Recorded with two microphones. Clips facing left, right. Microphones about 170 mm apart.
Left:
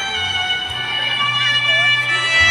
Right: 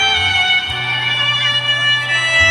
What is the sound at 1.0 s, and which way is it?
Bagpipes, 85° right.